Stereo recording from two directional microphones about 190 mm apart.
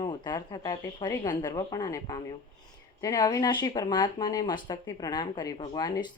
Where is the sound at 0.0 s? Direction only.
20° left (ahead or behind).